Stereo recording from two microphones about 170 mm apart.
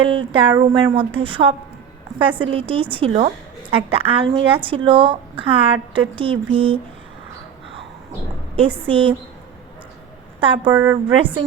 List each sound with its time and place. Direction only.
0.0 s a woman's voice: 30° right (ahead or behind)
8.9 s a woman's voice: 30° right (ahead or behind)
10.4 s a woman's voice: 30° right (ahead or behind)
10.7 s a woman's voice: 15° right (ahead or behind)